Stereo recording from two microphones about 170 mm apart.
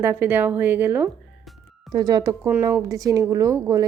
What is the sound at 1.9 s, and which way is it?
A woman's voice, 25° right (ahead or behind).